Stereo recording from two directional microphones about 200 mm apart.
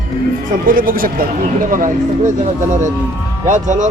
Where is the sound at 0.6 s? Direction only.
45° right (ahead or behind).